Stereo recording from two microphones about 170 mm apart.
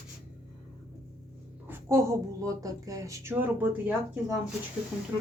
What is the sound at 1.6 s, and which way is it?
Speech, 15° right (ahead or behind).